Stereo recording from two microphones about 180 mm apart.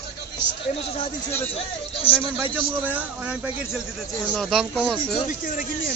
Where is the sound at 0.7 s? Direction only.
35° left (ahead or behind).